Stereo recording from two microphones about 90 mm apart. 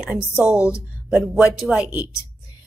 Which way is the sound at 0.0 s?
10° right (ahead or behind).